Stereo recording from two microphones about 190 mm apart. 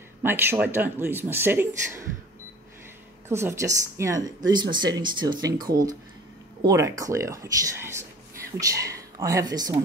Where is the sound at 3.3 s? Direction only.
15° right (ahead or behind).